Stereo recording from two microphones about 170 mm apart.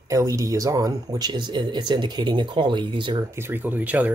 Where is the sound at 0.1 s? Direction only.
20° right (ahead or behind).